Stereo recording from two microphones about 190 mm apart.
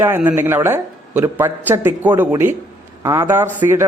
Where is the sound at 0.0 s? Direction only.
10° right (ahead or behind).